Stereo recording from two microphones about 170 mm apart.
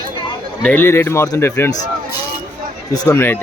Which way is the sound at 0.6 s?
10° left (ahead or behind).